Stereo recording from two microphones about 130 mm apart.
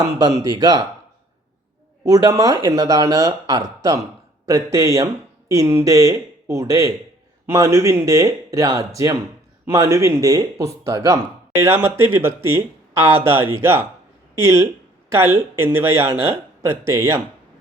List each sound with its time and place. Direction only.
0.4 s speech: 30° right (ahead or behind)
2.0 s speech: 30° right (ahead or behind)